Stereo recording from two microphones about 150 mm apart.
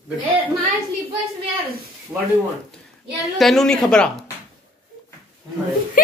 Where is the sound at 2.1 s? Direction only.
25° right (ahead or behind).